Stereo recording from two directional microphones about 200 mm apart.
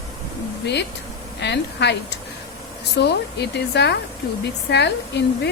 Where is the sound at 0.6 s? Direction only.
60° left (ahead or behind).